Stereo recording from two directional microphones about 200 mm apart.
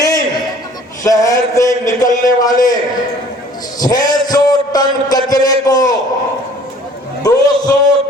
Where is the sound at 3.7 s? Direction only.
20° left (ahead or behind).